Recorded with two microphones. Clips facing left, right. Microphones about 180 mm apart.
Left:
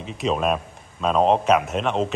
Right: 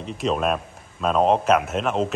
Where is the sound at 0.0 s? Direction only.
Centre (ahead or behind).